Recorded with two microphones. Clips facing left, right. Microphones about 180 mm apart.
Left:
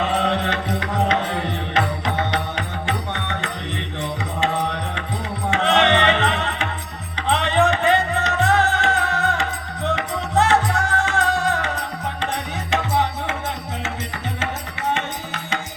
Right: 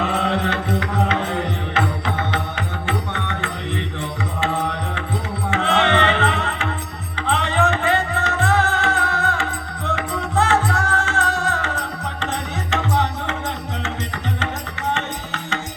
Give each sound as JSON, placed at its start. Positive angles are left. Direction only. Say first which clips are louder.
{"t": 0.1, "sound": "music", "louder": "even", "side_deg": 15}
{"t": 2.0, "sound": "music", "louder": "left 1 dB", "side_deg": 15}
{"t": 5.5, "sound": "music", "louder": "left 1 dB", "side_deg": 20}
{"t": 14.9, "sound": "music", "louder": "even", "side_deg": 10}